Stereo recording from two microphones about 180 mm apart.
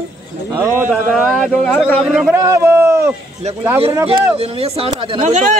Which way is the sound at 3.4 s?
40° right (ahead or behind).